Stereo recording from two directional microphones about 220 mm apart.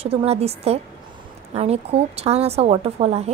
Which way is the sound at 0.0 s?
25° right (ahead or behind).